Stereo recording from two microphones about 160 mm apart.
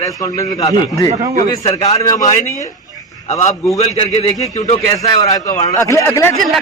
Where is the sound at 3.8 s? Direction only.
40° left (ahead or behind).